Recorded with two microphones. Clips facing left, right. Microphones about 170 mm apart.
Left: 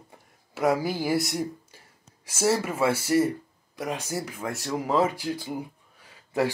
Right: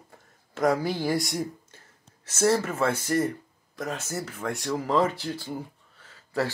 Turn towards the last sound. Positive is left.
turn(degrees=15)  # may be behind; listen again after turning